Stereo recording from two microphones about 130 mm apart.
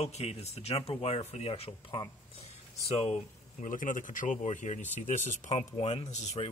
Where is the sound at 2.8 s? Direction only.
60° left (ahead or behind).